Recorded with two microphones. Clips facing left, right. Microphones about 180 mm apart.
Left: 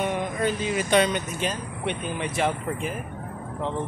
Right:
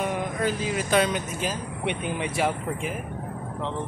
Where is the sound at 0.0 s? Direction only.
5° right (ahead or behind).